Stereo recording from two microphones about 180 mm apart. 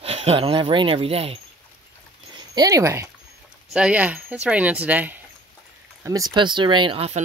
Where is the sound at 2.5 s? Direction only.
20° right (ahead or behind).